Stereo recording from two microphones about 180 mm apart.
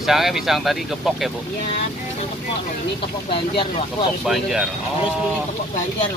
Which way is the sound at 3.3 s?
30° left (ahead or behind).